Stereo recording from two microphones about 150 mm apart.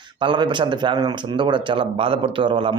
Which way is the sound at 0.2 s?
30° right (ahead or behind).